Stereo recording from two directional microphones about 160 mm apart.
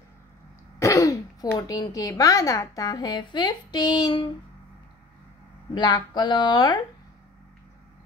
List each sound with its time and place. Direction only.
0.7 s speech: 20° left (ahead or behind)
5.8 s a woman's voice: 25° left (ahead or behind)